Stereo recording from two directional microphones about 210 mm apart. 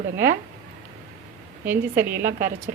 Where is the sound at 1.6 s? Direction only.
10° right (ahead or behind).